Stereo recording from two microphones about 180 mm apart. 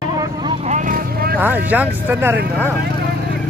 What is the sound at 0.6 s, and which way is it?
Vehicle, 40° right (ahead or behind).